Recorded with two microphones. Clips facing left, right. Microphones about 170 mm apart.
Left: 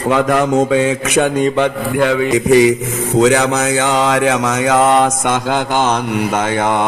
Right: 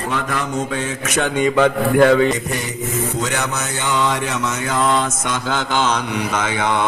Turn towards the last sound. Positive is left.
turn(degrees=50)  # may be behind; listen again after turning